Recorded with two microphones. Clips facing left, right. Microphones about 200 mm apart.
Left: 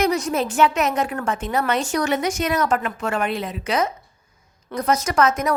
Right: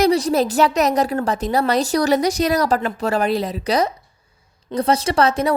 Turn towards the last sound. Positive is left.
turn(degrees=-30)  # may be behind; listen again after turning